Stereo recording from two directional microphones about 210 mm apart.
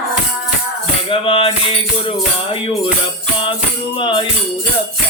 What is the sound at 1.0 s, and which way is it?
Music, 25° left (ahead or behind).